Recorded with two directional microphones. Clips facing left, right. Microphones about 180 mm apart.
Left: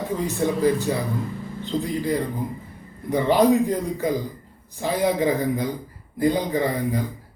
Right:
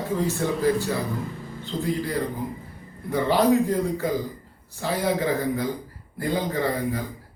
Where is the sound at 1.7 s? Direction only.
20° left (ahead or behind).